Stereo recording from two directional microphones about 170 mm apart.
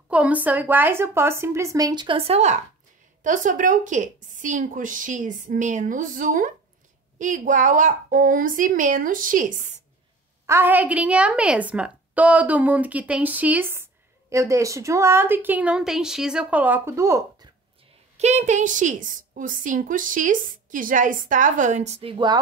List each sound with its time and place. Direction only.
0.1 s a woman's voice: 10° right (ahead or behind); by 2.5 s 35° right (ahead or behind)
3.3 s a woman's voice: 50° right (ahead or behind)
10.4 s a woman's voice: 15° right (ahead or behind)
18.1 s a woman's voice: 40° right (ahead or behind)